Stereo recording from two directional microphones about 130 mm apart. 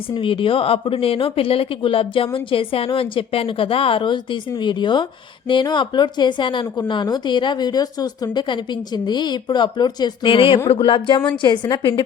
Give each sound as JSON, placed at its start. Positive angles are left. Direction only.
{"t": 0.1, "sound": "a woman's voice", "side_deg": 40}